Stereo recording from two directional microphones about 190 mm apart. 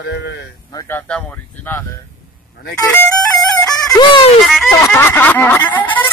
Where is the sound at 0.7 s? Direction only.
15° left (ahead or behind).